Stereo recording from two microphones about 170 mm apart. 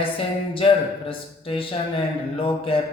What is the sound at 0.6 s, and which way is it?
A man's voice, 30° left (ahead or behind).